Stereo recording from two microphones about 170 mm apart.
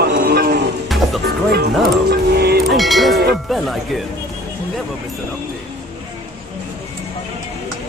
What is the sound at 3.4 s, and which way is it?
Speech, centre (ahead or behind).